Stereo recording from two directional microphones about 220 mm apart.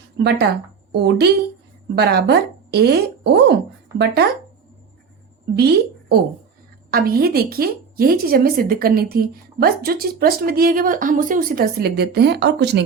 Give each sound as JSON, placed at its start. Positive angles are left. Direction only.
{"t": 0.2, "sound": "a woman's voice", "side_deg": -45}
{"t": 5.5, "sound": "a woman's voice", "side_deg": -45}